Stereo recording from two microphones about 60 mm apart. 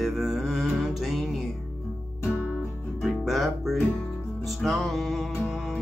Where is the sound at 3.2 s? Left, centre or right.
Centre.